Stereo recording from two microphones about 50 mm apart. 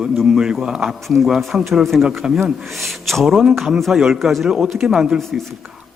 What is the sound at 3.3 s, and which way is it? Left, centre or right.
A man's voice, centre.